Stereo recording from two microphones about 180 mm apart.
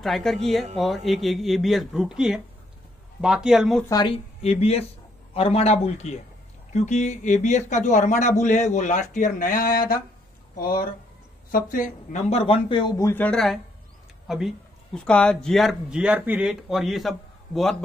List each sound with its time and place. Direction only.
0.0 s speech: centre (ahead or behind)
4.4 s speech: 35° left (ahead or behind); by 17.1 s centre (ahead or behind)